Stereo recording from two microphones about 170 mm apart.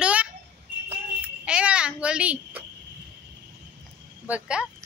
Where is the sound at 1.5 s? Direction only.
5° right (ahead or behind).